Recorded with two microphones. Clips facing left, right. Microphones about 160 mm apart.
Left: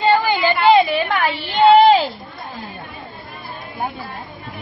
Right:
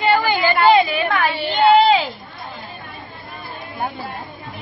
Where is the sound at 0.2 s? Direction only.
20° left (ahead or behind).